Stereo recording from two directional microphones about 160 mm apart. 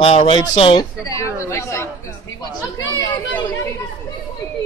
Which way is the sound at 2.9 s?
25° left (ahead or behind).